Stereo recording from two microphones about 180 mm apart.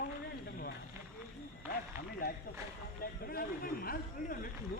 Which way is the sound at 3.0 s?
55° left (ahead or behind).